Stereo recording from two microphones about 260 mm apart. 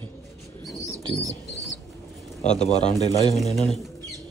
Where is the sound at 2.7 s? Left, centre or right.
Centre.